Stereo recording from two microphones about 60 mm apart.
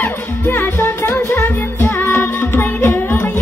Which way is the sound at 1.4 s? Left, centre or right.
Left.